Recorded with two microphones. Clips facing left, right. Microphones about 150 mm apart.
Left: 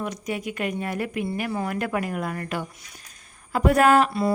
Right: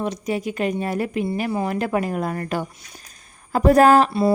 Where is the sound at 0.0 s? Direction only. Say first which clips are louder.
Right 5 dB; 30° right (ahead or behind).